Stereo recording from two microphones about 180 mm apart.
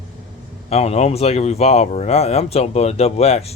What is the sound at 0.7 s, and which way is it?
Speech, 35° left (ahead or behind).